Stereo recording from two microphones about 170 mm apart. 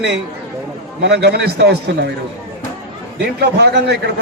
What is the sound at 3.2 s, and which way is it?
Speech, 75° right (ahead or behind).